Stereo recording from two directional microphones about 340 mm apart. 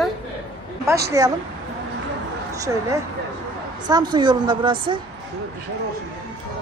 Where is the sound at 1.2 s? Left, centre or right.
Centre.